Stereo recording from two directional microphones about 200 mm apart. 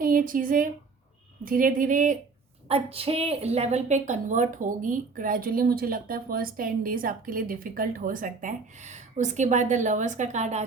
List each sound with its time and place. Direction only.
0.0 s a woman's voice: 45° right (ahead or behind)
2.6 s a woman's voice: 30° right (ahead or behind)